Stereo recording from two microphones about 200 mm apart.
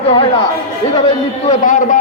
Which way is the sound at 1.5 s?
40° left (ahead or behind).